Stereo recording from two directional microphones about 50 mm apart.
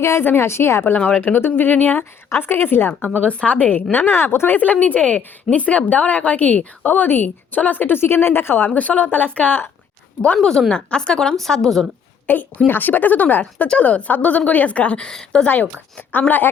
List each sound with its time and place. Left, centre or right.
0.0 s a woman's voice: left
1.2 s a woman's voice: left
2.3 s a woman's voice: left
3.2 s a woman's voice: left
3.9 s a woman's voice: left
4.5 s a woman's voice: left
10.7 s a woman's voice: centre
12.3 s a woman's voice: left
15.0 s a woman's voice: centre
16.0 s a woman's voice: left